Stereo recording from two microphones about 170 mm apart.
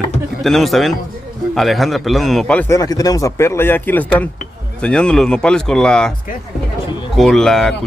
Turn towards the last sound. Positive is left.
turn(degrees=5)  # may be behind; listen again after turning